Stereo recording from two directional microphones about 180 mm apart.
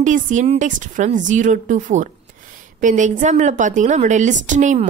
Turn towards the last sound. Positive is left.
turn(degrees=-45)  # may be behind; listen again after turning